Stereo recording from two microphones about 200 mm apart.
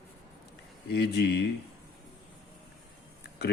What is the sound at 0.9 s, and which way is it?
Speech, 55° left (ahead or behind).